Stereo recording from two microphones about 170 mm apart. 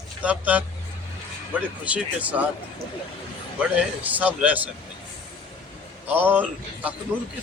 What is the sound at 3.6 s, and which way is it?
A man's voice, 10° right (ahead or behind).